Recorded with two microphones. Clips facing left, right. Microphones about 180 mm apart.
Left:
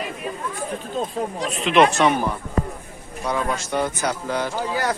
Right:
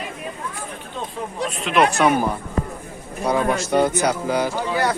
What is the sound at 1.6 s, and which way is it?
Speech, 5° right (ahead or behind).